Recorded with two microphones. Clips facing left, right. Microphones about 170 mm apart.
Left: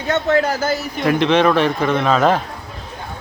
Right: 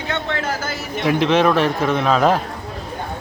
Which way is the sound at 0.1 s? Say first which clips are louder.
Left 8 dB; 40° left (ahead or behind).